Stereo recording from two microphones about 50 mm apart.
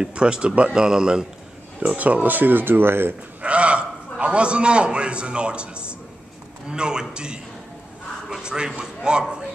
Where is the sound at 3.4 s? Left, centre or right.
Right.